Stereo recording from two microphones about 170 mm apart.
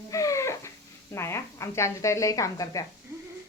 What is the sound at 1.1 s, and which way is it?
A woman's voice, 15° left (ahead or behind).